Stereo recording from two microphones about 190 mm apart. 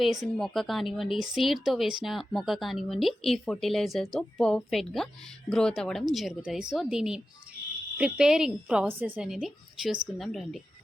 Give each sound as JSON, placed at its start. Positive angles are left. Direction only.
{"t": 0.0, "sound": "speech", "side_deg": 0}